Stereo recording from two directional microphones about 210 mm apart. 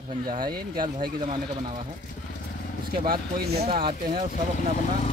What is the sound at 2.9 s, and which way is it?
Speech, 45° right (ahead or behind).